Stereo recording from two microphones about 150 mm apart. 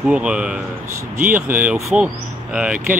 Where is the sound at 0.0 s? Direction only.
5° right (ahead or behind).